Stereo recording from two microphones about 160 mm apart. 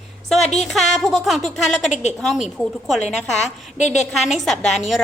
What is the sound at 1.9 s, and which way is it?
Speech, 45° left (ahead or behind).